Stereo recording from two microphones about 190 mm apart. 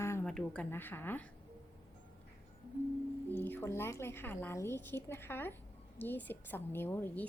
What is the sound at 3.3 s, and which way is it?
A woman's voice, 10° left (ahead or behind).